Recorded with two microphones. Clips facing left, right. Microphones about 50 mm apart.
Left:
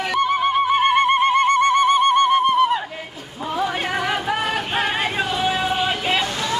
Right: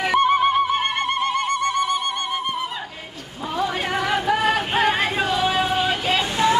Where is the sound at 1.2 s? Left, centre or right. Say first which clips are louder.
Left 6 dB; left.